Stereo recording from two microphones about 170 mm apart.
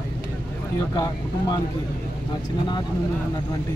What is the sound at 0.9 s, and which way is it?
Speech, 25° left (ahead or behind).